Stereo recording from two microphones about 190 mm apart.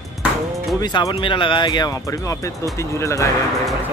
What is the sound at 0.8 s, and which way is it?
Speech, 20° left (ahead or behind).